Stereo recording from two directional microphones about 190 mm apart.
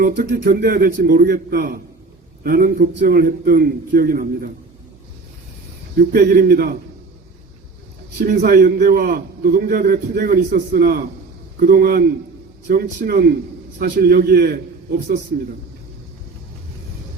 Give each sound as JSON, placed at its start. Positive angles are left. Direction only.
{"t": 0.0, "sound": "a man's voice", "side_deg": -50}
{"t": 6.0, "sound": "a man's voice", "side_deg": -50}
{"t": 8.2, "sound": "a man's voice", "side_deg": -50}